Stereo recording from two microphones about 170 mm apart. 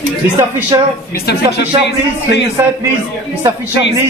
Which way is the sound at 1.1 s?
75° left (ahead or behind).